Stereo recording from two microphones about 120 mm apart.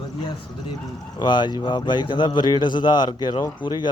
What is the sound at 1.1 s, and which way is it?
Speech, 40° left (ahead or behind).